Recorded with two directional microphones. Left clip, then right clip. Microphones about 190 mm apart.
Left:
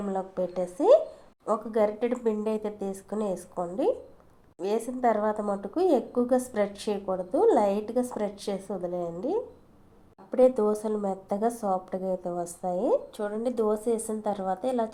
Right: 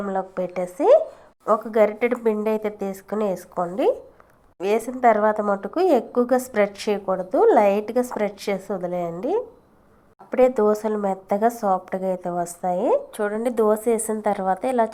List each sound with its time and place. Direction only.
0.1 s a woman's voice: 20° right (ahead or behind)